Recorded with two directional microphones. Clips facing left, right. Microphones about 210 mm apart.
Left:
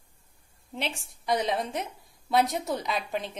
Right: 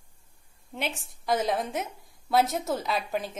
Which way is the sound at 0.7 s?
Centre (ahead or behind).